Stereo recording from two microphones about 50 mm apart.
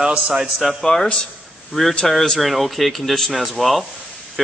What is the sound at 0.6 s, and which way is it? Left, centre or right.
A man's voice, centre.